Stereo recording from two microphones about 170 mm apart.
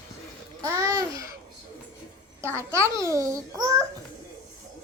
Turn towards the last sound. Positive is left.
turn(degrees=-20)  # may be behind; listen again after turning